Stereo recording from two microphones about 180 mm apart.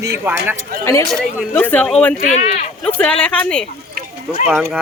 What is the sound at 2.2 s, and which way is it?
Speech, 40° left (ahead or behind).